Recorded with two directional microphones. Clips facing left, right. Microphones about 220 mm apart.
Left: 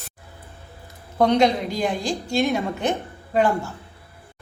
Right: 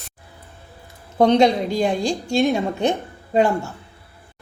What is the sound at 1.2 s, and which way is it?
Speech, 25° right (ahead or behind).